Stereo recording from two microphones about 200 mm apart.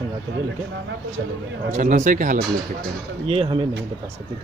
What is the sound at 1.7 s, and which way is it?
Speech, 40° right (ahead or behind).